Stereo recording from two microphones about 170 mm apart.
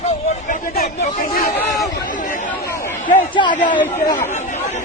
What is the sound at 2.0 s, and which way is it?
Chatter, 50° left (ahead or behind).